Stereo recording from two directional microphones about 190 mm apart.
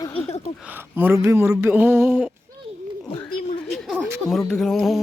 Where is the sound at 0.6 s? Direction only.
10° right (ahead or behind).